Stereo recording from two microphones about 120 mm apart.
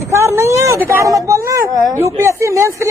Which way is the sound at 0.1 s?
20° right (ahead or behind).